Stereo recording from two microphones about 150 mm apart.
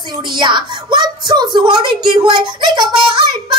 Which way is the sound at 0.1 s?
30° right (ahead or behind).